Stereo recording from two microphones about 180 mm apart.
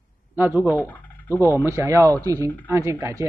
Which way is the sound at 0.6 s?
10° left (ahead or behind).